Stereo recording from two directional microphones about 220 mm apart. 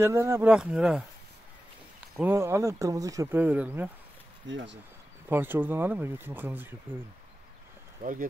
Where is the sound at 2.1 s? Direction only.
10° right (ahead or behind).